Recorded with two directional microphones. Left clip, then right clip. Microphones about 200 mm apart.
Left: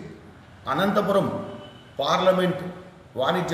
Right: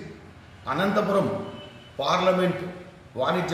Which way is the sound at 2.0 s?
Centre (ahead or behind).